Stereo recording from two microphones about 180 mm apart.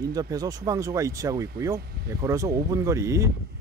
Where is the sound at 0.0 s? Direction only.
20° right (ahead or behind).